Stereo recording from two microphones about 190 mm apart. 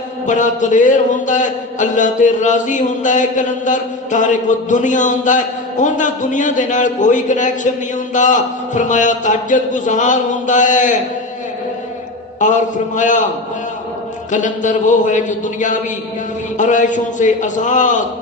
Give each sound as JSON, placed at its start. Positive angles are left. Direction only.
{"t": 0.3, "sound": "a man's voice", "side_deg": 40}
{"t": 12.4, "sound": "a man's voice", "side_deg": 40}
{"t": 14.3, "sound": "a man's voice", "side_deg": 40}